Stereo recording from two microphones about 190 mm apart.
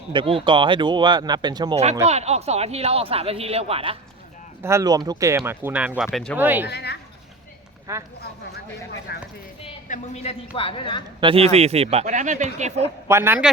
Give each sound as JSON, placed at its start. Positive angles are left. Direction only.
{"t": 0.1, "sound": "speech", "side_deg": -25}
{"t": 1.7, "sound": "speech", "side_deg": -35}
{"t": 4.6, "sound": "speech", "side_deg": -15}
{"t": 6.7, "sound": "a sound", "side_deg": 60}
{"t": 7.9, "sound": "speech", "side_deg": -15}
{"t": 9.1, "sound": "speech", "side_deg": 60}
{"t": 9.9, "sound": "a man's voice", "side_deg": 35}
{"t": 11.2, "sound": "speech", "side_deg": -30}
{"t": 13.1, "sound": "speech", "side_deg": -10}